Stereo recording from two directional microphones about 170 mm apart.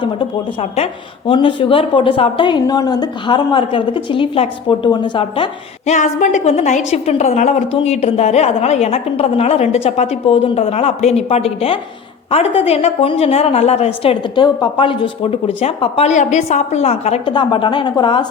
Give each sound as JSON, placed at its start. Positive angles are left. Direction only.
{"t": 0.0, "sound": "a woman's voice", "side_deg": 30}
{"t": 5.9, "sound": "a woman's voice", "side_deg": 45}